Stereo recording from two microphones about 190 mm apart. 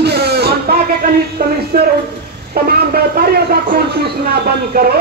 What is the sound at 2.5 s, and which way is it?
Speech, 50° right (ahead or behind).